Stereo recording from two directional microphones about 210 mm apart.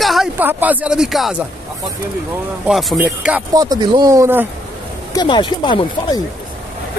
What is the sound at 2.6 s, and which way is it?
Speech, centre (ahead or behind).